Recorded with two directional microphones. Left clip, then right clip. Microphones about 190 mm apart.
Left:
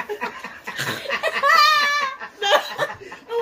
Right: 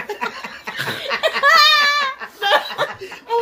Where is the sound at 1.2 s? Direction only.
20° right (ahead or behind).